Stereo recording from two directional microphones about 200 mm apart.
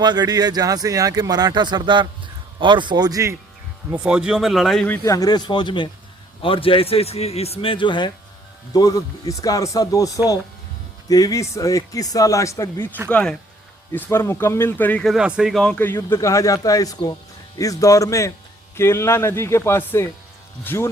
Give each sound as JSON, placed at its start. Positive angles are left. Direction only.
{"t": 0.0, "sound": "speech", "side_deg": -20}
{"t": 3.9, "sound": "speech", "side_deg": -5}
{"t": 5.0, "sound": "a man's voice", "side_deg": 15}
{"t": 11.1, "sound": "speech", "side_deg": 15}